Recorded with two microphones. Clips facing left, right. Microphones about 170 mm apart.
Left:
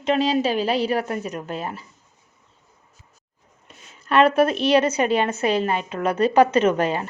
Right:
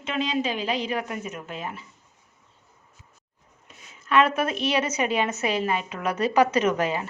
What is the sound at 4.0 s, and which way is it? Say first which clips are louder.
A woman's voice: left 5 dB; 35° left (ahead or behind).